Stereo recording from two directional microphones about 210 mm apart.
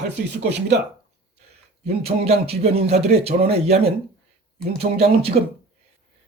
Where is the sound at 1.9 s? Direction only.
30° right (ahead or behind).